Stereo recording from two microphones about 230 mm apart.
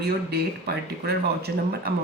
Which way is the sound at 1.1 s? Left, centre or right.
Right.